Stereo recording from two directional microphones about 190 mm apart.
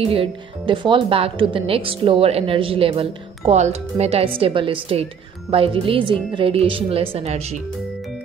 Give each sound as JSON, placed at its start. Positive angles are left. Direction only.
{"t": 0.0, "sound": "speech", "side_deg": -30}